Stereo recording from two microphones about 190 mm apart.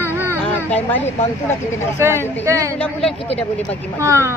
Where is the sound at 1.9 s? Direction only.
15° right (ahead or behind).